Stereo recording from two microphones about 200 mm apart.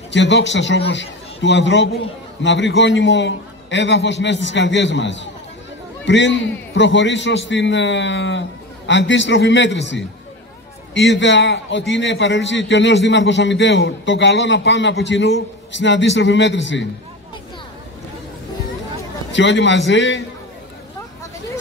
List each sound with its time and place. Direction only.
0.1 s a man's voice: 60° left (ahead or behind)
19.3 s a man's voice: 65° left (ahead or behind)